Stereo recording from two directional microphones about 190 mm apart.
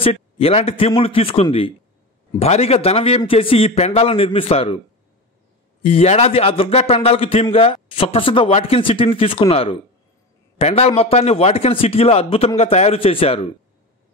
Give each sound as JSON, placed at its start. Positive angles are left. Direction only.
{"t": 0.0, "sound": "a man's voice", "side_deg": 30}